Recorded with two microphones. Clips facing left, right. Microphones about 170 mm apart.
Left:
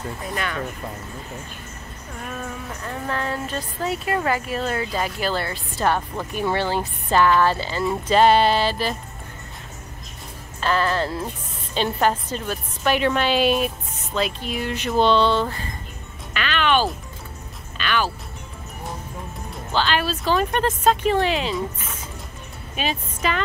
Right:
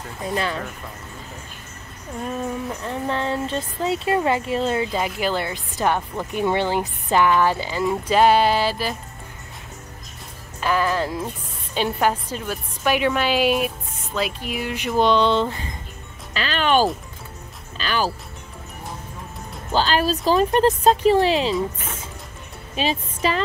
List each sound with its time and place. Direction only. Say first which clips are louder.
0.2 s speech: right 6 dB; 25° right (ahead or behind)
2.2 s speech: right 6 dB; 25° right (ahead or behind); by 8.9 s 10° right (ahead or behind)
10.6 s speech: even; 10° right (ahead or behind)
16.3 s speech: right 2 dB; 35° right (ahead or behind)
19.7 s speech: right 3 dB; 40° right (ahead or behind)
22.8 s speech: right 3 dB; 30° right (ahead or behind)